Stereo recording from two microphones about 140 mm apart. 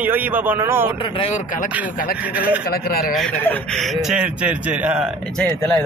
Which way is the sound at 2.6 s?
90° left.